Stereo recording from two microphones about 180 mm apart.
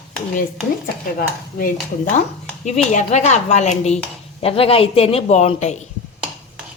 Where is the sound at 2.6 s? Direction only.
40° left (ahead or behind).